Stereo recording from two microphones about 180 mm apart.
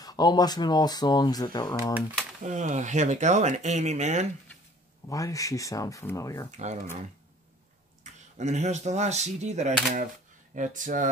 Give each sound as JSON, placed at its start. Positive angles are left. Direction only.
{"t": 0.0, "sound": "speech", "side_deg": 20}
{"t": 2.4, "sound": "speech", "side_deg": -40}
{"t": 5.1, "sound": "speech", "side_deg": 20}
{"t": 6.5, "sound": "speech", "side_deg": -40}
{"t": 8.0, "sound": "speech", "side_deg": -40}